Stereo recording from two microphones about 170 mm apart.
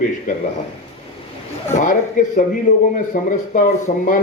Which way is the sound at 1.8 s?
50° left (ahead or behind).